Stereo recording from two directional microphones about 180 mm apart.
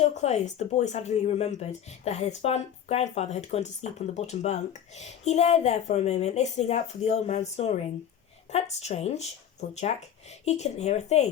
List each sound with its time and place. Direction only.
0.0 s speech: 40° left (ahead or behind)